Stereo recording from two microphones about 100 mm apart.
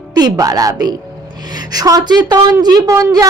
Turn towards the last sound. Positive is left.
turn(degrees=-30)  # may be behind; listen again after turning